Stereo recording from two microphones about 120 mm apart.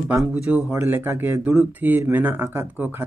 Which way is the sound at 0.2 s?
10° right (ahead or behind).